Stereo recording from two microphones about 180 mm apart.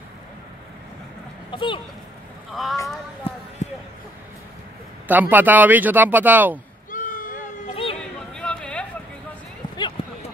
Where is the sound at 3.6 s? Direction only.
40° left (ahead or behind).